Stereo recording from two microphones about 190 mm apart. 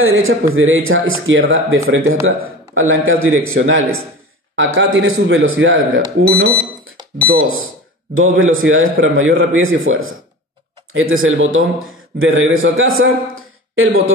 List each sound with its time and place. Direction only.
0.0 s speech: 90° right
6.3 s speech: 55° right (ahead or behind)
7.4 s a man's voice: 90° right